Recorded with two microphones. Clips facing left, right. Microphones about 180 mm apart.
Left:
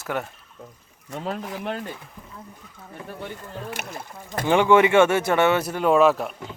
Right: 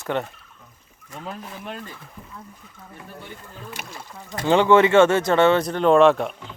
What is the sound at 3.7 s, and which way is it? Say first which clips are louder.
Speech: left 3 dB; 60° left (ahead or behind).